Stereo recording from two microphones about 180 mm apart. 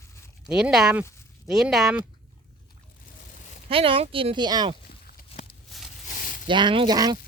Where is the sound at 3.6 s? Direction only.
30° right (ahead or behind).